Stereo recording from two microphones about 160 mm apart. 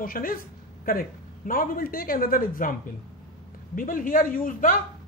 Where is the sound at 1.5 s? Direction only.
60° left (ahead or behind).